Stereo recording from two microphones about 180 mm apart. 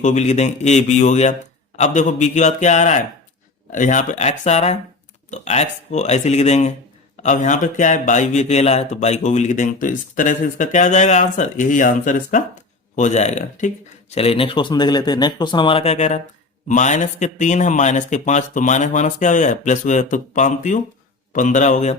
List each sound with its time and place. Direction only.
0.0 s a man's voice: 40° left (ahead or behind)